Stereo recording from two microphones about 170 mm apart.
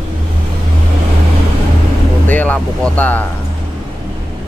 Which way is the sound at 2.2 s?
10° left (ahead or behind).